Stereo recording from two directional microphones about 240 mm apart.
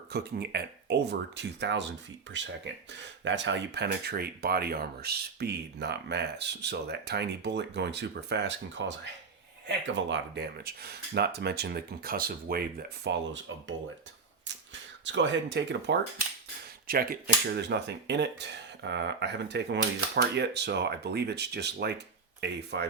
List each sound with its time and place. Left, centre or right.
0.1 s speech: right
13.1 s speech: right